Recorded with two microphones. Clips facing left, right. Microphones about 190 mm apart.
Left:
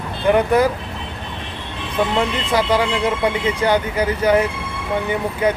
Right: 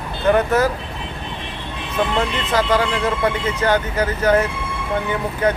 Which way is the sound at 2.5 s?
10° left (ahead or behind).